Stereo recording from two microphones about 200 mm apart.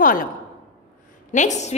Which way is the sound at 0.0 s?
45° left (ahead or behind).